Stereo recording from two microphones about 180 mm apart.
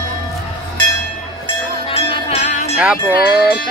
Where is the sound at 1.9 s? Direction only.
30° left (ahead or behind).